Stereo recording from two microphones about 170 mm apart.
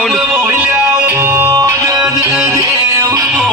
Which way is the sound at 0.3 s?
15° right (ahead or behind).